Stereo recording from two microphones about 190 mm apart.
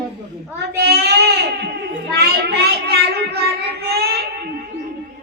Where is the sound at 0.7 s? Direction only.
55° right (ahead or behind).